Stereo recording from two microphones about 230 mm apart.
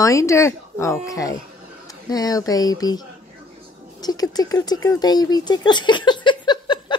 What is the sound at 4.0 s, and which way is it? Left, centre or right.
Speech, centre.